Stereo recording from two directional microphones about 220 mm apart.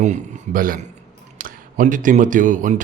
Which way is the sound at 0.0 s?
35° right (ahead or behind).